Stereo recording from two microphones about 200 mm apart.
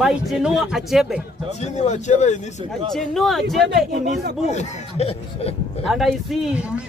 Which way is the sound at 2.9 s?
Centre (ahead or behind).